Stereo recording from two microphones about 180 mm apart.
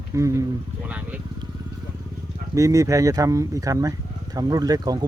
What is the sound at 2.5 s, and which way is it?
Speech, 20° right (ahead or behind).